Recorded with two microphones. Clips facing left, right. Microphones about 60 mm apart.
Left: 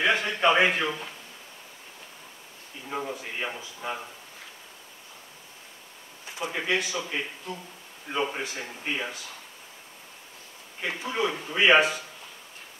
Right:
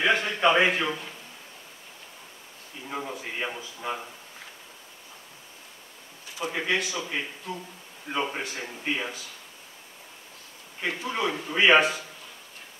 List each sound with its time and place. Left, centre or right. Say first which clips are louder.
0.0 s a man's voice: even; centre
2.9 s a man's voice: left 1 dB; centre
6.4 s a man's voice: even; centre
10.9 s a man's voice: right 2 dB; centre
11.1 s a man's voice: even; centre